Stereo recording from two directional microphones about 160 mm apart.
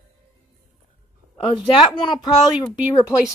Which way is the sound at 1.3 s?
25° left (ahead or behind).